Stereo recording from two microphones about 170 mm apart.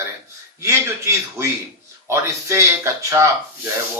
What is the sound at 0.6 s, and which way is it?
Speech, 15° right (ahead or behind).